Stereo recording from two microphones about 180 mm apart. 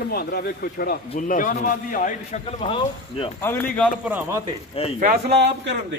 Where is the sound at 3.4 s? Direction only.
10° left (ahead or behind).